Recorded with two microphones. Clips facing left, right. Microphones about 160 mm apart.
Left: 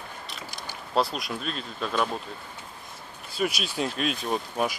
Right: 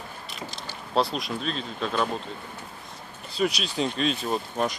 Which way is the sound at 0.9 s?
Centre (ahead or behind).